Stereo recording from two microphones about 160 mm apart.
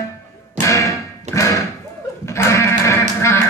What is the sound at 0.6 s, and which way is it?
Thump, 20° left (ahead or behind).